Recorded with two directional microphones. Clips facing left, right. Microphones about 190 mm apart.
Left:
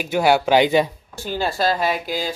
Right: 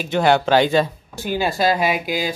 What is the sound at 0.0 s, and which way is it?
Speech, 10° left (ahead or behind).